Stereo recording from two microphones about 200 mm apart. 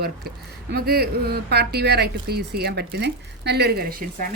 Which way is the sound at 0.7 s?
50° right (ahead or behind).